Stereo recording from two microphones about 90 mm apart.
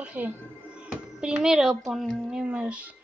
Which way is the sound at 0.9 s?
10° right (ahead or behind).